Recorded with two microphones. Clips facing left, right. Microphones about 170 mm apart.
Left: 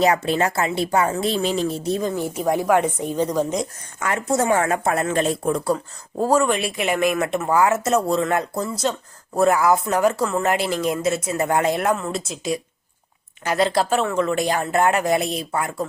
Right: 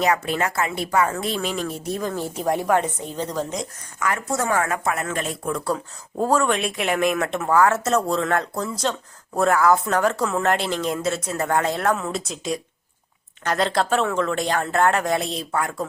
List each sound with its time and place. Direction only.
0.0 s speech: 30° left (ahead or behind)
2.3 s speech: 5° left (ahead or behind)
4.0 s speech: 25° left (ahead or behind)
5.5 s speech: 20° left (ahead or behind)
5.7 s speech: 5° left (ahead or behind)
11.9 s speech: centre (ahead or behind)